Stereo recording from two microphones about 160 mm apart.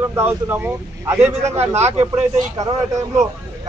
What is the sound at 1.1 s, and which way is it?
Speech, 45° right (ahead or behind).